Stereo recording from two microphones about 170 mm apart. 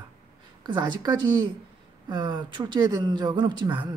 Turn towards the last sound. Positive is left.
turn(degrees=-25)  # may be behind; listen again after turning